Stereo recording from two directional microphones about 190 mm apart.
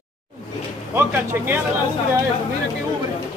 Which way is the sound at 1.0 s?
10° right (ahead or behind).